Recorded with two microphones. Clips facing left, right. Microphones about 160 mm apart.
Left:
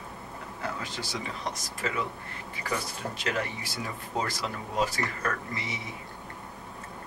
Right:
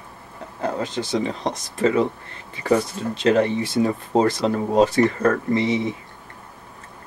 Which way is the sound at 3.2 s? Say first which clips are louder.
Right 15 dB; 25° right (ahead or behind).